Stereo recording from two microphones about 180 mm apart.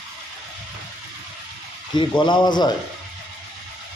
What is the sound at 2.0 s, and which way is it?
Speech, 25° left (ahead or behind).